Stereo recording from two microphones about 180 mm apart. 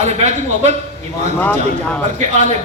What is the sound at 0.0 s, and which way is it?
Speech, 40° right (ahead or behind).